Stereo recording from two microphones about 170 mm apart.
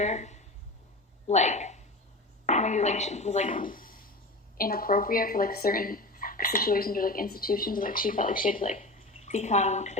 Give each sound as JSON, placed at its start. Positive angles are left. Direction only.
{"t": 0.0, "sound": "a woman's voice", "side_deg": 45}